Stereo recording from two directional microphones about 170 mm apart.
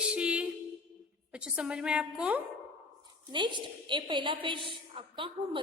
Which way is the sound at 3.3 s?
25° right (ahead or behind).